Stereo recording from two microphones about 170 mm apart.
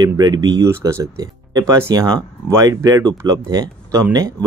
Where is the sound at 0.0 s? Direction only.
25° right (ahead or behind).